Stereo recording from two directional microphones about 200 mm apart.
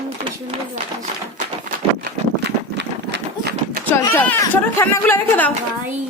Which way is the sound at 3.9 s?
10° left (ahead or behind).